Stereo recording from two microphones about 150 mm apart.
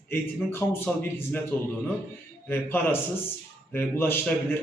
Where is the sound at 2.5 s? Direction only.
15° left (ahead or behind).